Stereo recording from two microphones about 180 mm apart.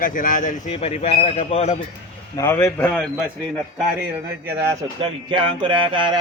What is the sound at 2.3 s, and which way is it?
Speech, 15° left (ahead or behind).